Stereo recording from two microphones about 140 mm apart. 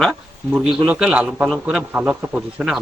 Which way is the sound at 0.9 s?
5° right (ahead or behind).